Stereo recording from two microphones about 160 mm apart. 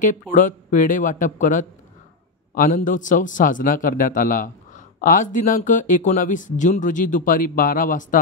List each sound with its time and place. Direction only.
0.0 s a man's voice: 55° left (ahead or behind)